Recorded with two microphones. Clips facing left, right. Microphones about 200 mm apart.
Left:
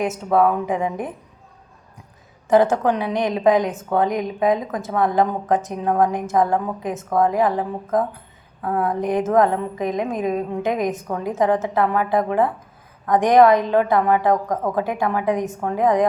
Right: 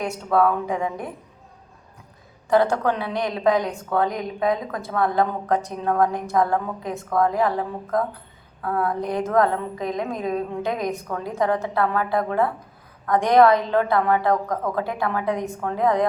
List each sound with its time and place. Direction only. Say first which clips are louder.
0.3 s a woman's voice: left 2 dB; 15° left (ahead or behind)
2.5 s a woman's voice: left 3 dB; 20° left (ahead or behind)